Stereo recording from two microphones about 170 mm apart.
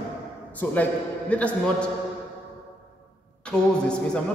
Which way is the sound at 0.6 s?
10° left (ahead or behind).